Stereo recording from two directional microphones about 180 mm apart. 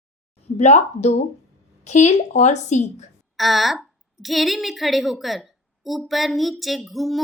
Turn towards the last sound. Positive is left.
turn(degrees=0)  # may be behind; listen again after turning